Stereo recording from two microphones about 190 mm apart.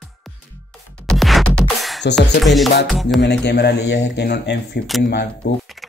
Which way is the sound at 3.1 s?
65° left (ahead or behind).